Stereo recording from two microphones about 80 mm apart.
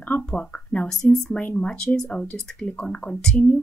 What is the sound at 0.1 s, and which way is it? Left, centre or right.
Speech, centre.